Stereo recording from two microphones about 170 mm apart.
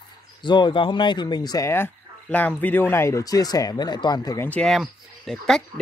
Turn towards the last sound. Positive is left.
turn(degrees=0)  # may be behind; listen again after turning